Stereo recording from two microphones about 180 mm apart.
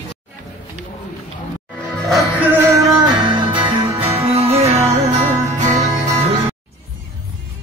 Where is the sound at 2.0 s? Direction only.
5° right (ahead or behind); by 6.3 s 40° right (ahead or behind).